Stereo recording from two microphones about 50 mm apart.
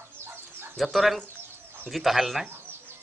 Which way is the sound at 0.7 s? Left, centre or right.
Centre.